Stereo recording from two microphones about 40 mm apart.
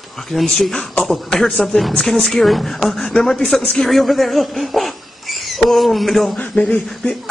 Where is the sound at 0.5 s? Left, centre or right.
Centre.